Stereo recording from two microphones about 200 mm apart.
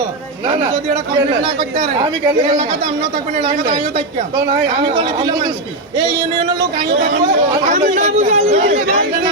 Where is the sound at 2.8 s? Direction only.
40° right (ahead or behind).